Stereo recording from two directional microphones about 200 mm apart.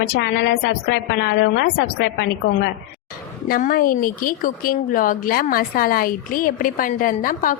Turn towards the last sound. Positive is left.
turn(degrees=45)  # may be behind; listen again after turning